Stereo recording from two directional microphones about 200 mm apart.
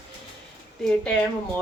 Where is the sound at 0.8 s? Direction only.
5° left (ahead or behind).